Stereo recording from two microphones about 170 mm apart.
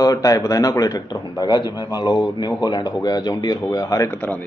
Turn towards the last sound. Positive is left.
turn(degrees=10)  # may be behind; listen again after turning